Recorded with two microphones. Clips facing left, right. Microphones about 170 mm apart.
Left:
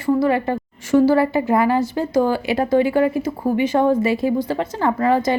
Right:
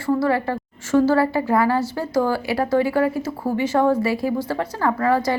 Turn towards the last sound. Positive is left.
turn(degrees=20)  # may be behind; listen again after turning